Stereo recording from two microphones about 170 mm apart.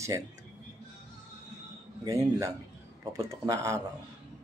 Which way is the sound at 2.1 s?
20° right (ahead or behind).